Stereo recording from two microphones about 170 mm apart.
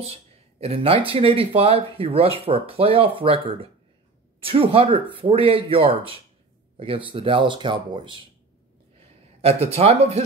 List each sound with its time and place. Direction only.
0.0 s speech: 35° right (ahead or behind)
9.4 s a man's voice: 35° right (ahead or behind)